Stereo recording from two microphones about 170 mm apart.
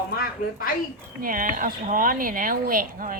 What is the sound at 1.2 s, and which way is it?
Speech, 55° right (ahead or behind).